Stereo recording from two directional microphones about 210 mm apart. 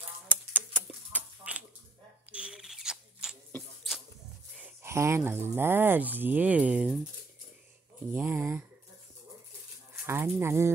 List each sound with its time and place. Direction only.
0.3 s a sound: 10° right (ahead or behind)
4.6 s speech: 10° right (ahead or behind)
8.1 s speech: 10° right (ahead or behind)
10.0 s speech: 10° right (ahead or behind)